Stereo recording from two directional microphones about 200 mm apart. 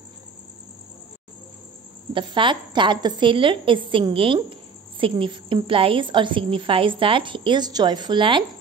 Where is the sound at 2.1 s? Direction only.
25° right (ahead or behind).